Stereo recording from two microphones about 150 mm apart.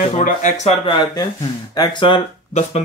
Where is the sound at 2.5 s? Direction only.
50° left (ahead or behind).